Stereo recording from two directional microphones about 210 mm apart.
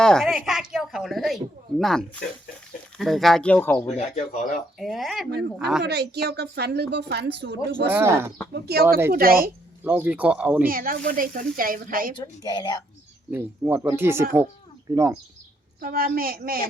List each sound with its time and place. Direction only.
0.0 s speech: centre (ahead or behind)
3.8 s speech: 30° left (ahead or behind)
4.8 s speech: centre (ahead or behind)
5.8 s a woman's voice: 50° right (ahead or behind)
7.9 s speech: 10° right (ahead or behind)
8.5 s a woman's voice: 50° right (ahead or behind)
9.8 s speech: 10° right (ahead or behind)
10.7 s a woman's voice: 40° right (ahead or behind)
12.1 s a woman's voice: 20° left (ahead or behind)
13.3 s speech: 10° right (ahead or behind)
15.8 s a woman's voice: 45° right (ahead or behind)